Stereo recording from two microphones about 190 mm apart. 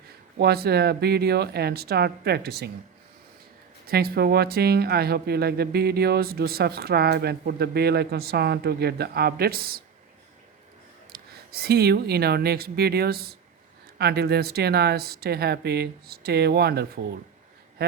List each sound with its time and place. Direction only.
0.3 s speech: 55° right (ahead or behind)
3.8 s speech: 50° right (ahead or behind)
11.1 s speech: 55° right (ahead or behind)